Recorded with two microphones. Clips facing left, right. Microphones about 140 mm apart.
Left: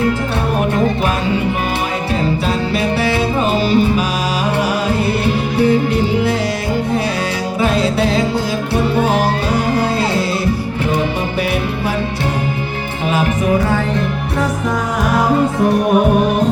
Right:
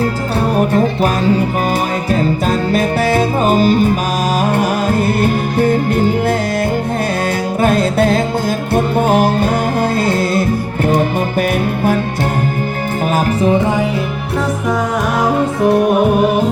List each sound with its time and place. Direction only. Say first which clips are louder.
0.7 s music: right 2 dB; 40° right (ahead or behind)
7.6 s music: right 2 dB; 50° right (ahead or behind)
13.1 s music: right 2 dB; 40° right (ahead or behind)
13.5 s music: right 1 dB; 25° right (ahead or behind)